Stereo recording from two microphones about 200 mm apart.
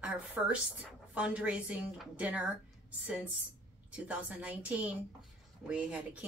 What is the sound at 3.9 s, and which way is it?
Speech, 5° right (ahead or behind).